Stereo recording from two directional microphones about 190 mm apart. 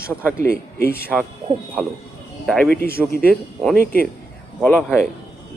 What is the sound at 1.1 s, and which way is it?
Speech, centre (ahead or behind).